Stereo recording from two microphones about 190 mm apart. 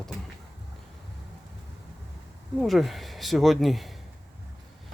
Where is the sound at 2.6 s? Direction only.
Centre (ahead or behind).